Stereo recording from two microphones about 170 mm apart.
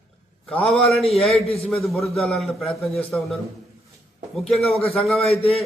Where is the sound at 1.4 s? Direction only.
35° left (ahead or behind).